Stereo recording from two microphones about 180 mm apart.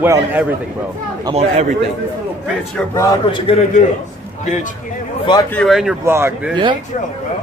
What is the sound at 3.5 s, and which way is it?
Speech, 30° left (ahead or behind).